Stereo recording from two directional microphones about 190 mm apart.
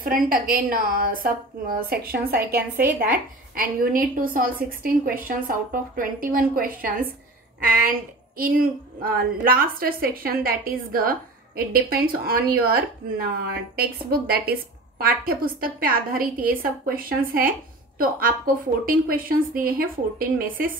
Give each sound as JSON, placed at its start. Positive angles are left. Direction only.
{"t": 0.0, "sound": "a woman's voice", "side_deg": -45}